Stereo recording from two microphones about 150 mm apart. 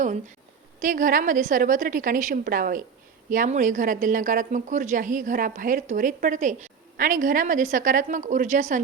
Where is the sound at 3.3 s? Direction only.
60° right (ahead or behind).